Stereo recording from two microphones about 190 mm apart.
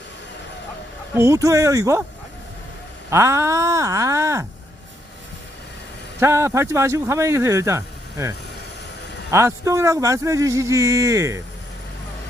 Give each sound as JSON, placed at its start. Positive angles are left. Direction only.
{"t": 1.1, "sound": "speech", "side_deg": -15}
{"t": 3.1, "sound": "speech", "side_deg": -15}
{"t": 6.1, "sound": "speech", "side_deg": -15}
{"t": 9.3, "sound": "speech", "side_deg": -15}